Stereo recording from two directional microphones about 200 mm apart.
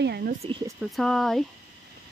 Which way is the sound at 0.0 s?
55° right (ahead or behind).